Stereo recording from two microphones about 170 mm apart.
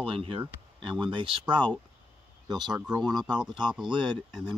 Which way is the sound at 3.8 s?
25° right (ahead or behind).